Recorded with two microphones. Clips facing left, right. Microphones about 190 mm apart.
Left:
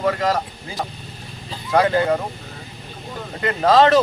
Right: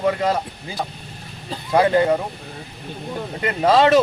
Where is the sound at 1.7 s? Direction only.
20° right (ahead or behind).